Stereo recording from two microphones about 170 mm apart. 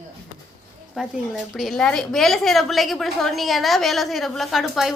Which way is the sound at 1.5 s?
Centre (ahead or behind).